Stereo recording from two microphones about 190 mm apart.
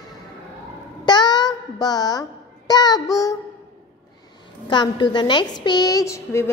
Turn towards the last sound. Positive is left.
turn(degrees=15)  # may be behind; listen again after turning